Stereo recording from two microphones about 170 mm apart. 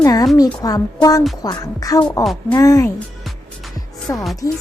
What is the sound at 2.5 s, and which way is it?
Speech, 20° left (ahead or behind).